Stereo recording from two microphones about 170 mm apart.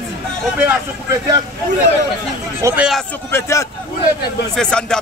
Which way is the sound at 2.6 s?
5° right (ahead or behind).